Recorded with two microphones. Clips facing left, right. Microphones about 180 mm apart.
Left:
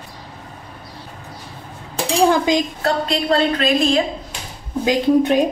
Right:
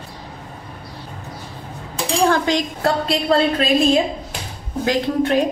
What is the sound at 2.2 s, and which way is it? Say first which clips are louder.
Dishes: left 2 dB; 10° left (ahead or behind).